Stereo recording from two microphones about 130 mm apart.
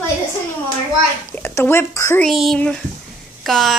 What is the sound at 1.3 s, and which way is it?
Speech, 15° left (ahead or behind).